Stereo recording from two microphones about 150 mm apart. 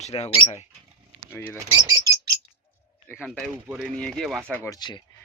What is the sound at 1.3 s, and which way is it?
Speech, 15° left (ahead or behind).